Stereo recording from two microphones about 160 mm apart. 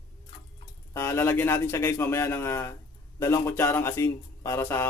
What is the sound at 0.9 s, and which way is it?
Speech, 15° left (ahead or behind).